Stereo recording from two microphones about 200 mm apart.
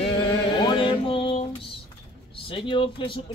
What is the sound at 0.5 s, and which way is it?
Music, 25° left (ahead or behind).